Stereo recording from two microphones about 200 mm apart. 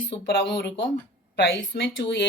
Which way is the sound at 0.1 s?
60° left (ahead or behind).